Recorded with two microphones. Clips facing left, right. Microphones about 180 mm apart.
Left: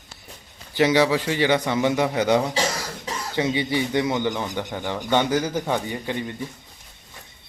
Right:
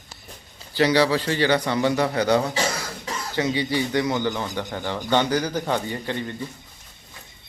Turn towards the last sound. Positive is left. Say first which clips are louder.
# even
turn(degrees=10)  # may be behind; listen again after turning